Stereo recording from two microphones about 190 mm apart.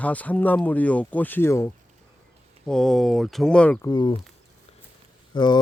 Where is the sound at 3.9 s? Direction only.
25° left (ahead or behind).